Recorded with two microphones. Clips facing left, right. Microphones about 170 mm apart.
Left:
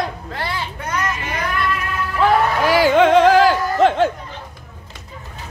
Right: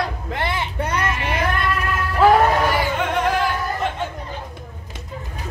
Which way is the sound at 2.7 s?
90° left.